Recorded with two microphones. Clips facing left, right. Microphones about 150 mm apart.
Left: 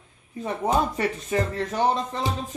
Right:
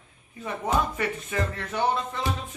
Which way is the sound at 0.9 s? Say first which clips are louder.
Left 4 dB; 35° left (ahead or behind).